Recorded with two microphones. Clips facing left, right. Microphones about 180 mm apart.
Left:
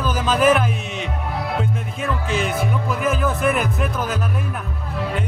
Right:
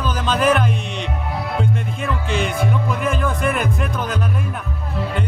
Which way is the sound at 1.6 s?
Centre (ahead or behind).